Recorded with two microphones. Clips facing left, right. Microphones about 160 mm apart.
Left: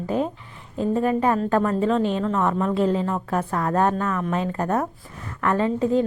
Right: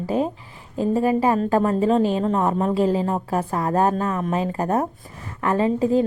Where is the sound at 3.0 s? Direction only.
35° right (ahead or behind).